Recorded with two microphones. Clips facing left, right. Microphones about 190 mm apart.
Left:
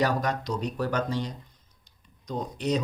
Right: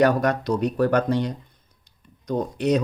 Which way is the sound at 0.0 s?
60° right (ahead or behind).